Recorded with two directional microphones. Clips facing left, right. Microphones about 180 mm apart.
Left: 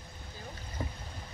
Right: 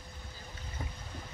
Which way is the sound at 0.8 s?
45° left (ahead or behind).